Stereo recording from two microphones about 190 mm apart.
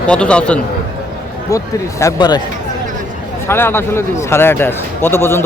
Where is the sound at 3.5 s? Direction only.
10° left (ahead or behind).